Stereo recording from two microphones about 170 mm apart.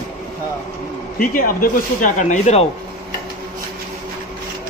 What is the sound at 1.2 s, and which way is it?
Speech, 55° left (ahead or behind).